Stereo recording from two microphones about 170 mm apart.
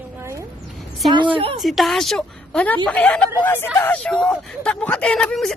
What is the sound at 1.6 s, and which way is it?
A woman's voice, centre (ahead or behind).